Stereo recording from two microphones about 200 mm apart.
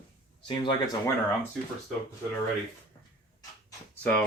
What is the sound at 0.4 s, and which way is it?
Speech, 25° left (ahead or behind).